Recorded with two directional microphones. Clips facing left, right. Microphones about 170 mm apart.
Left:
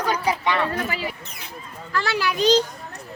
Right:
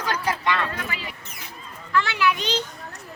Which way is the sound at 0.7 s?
35° left (ahead or behind).